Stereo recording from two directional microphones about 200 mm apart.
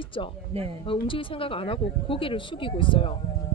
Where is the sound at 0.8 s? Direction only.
25° left (ahead or behind).